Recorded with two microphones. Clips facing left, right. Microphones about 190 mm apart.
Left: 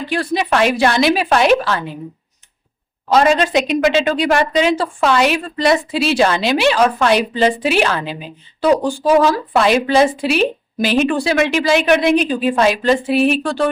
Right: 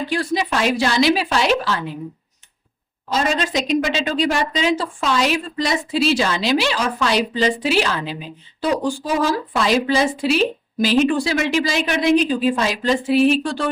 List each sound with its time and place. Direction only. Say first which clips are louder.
0.1 s speech: left 6 dB; 65° left (ahead or behind)
3.1 s speech: left 7 dB; 65° left (ahead or behind)